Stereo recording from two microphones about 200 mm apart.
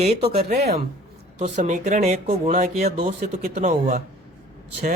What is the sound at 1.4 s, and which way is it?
Speech, 35° right (ahead or behind).